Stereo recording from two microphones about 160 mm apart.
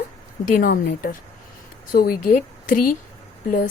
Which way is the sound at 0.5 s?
65° left (ahead or behind).